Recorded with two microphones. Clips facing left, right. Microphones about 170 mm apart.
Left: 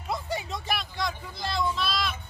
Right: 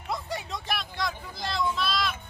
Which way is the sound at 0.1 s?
Centre (ahead or behind).